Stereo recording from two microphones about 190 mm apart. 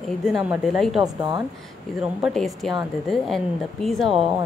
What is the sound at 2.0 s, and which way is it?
Speech, centre (ahead or behind).